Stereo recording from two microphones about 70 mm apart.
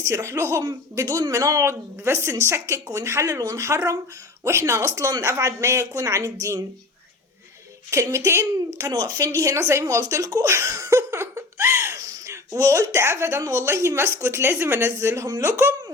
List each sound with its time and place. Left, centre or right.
0.0 s speech: right
2.2 s a woman's voice: right
8.1 s speech: right
10.5 s laughter: right
11.9 s a woman's voice: right